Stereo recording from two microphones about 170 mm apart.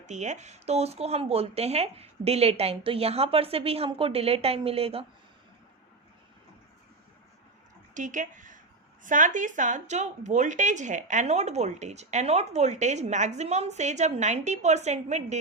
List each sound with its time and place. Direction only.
0.0 s speech: 45° right (ahead or behind)
7.9 s speech: 50° right (ahead or behind)